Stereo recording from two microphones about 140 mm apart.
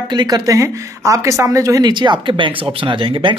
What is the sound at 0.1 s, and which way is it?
Speech, 30° right (ahead or behind).